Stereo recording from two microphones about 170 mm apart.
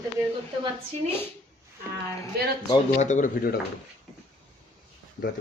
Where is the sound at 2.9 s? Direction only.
45° left (ahead or behind).